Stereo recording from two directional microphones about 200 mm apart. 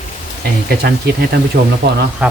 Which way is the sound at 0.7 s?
55° right (ahead or behind).